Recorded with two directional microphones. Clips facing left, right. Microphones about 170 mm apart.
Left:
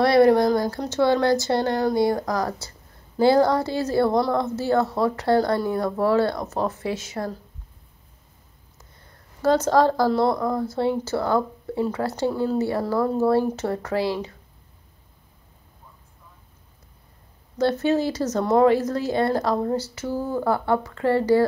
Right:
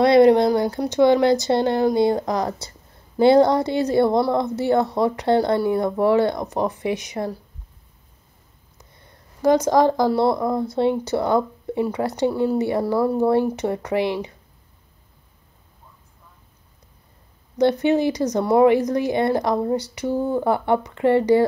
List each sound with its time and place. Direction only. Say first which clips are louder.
0.0 s speech: right 3 dB; 20° right (ahead or behind)
9.4 s speech: right 2 dB; 15° right (ahead or behind)
17.6 s speech: right 3 dB; 15° right (ahead or behind)